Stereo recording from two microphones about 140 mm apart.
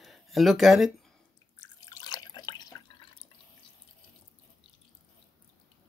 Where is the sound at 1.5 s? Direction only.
25° left (ahead or behind).